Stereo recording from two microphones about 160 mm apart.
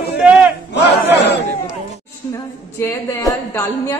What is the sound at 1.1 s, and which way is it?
Battle cry, 90° left.